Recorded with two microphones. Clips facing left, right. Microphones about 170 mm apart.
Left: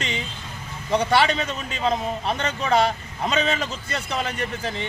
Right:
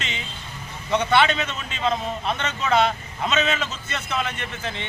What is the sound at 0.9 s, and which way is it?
Speech, 35° left (ahead or behind).